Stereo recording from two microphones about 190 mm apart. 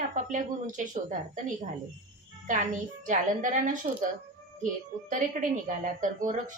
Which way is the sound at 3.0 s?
40° right (ahead or behind).